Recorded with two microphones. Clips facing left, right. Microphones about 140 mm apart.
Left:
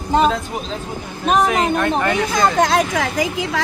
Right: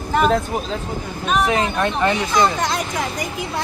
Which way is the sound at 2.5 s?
90° left.